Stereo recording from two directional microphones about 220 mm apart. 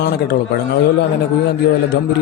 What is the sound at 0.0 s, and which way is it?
Speech, 45° left (ahead or behind).